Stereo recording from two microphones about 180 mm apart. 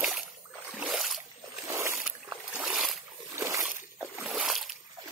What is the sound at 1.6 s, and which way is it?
Boat, 15° right (ahead or behind).